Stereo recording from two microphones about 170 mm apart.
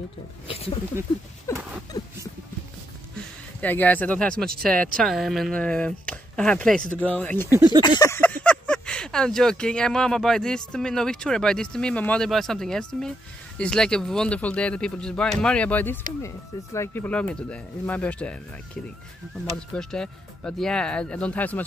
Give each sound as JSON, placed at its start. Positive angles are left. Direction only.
{"t": 0.5, "sound": "speech", "side_deg": 35}
{"t": 1.0, "sound": "speech", "side_deg": -15}
{"t": 1.5, "sound": "a sound", "side_deg": 15}
{"t": 3.6, "sound": "speech", "side_deg": 10}
{"t": 7.5, "sound": "speech", "side_deg": -25}
{"t": 7.8, "sound": "a sound", "side_deg": 20}
{"t": 8.2, "sound": "speech", "side_deg": 5}
{"t": 19.5, "sound": "speech", "side_deg": 5}